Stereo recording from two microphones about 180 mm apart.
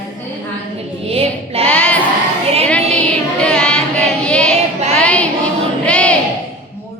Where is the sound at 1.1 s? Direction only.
35° right (ahead or behind).